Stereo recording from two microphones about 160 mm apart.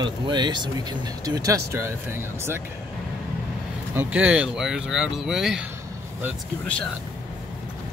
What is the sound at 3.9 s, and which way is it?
Speech, 10° right (ahead or behind).